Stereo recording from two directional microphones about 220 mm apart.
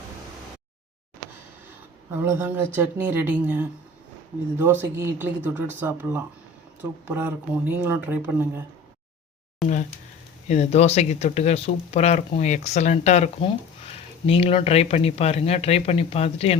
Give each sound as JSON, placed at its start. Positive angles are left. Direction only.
{"t": 2.1, "sound": "speech", "side_deg": -10}
{"t": 10.5, "sound": "speech", "side_deg": 30}